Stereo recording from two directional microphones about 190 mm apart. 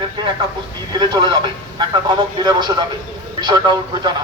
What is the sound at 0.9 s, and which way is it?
Speech, 25° right (ahead or behind).